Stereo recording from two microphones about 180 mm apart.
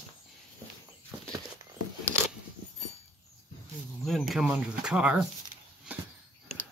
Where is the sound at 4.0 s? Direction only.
Centre (ahead or behind).